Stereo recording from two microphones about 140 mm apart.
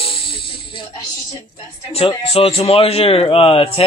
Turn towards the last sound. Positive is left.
turn(degrees=40)  # may be behind; listen again after turning